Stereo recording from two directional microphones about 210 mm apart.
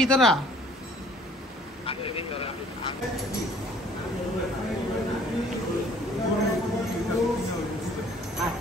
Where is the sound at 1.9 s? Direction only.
25° left (ahead or behind).